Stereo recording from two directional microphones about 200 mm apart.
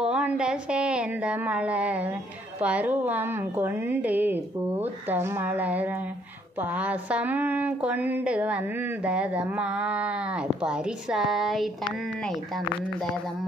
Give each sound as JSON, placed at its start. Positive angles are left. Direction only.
{"t": 0.0, "sound": "a woman's voice", "side_deg": -5}